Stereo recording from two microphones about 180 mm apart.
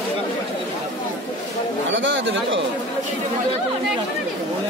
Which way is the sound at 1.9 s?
90° right.